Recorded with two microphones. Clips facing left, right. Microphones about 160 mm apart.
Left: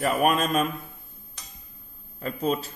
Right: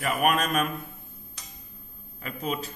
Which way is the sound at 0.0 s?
30° left (ahead or behind).